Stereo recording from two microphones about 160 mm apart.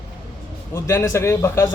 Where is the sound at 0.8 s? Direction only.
15° left (ahead or behind).